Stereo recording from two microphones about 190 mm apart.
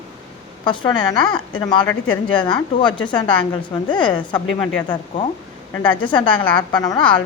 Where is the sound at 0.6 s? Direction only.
25° left (ahead or behind).